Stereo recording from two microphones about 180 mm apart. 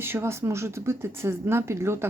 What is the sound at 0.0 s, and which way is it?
Speech, 15° right (ahead or behind).